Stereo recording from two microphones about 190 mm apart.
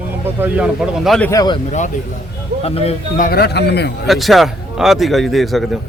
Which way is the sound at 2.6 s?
30° left (ahead or behind).